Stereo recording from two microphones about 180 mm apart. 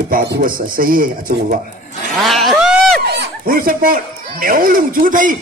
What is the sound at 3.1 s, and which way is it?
Speech, 60° right (ahead or behind).